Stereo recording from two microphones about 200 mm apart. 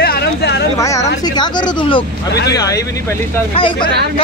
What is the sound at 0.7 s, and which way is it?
Speech, 15° left (ahead or behind).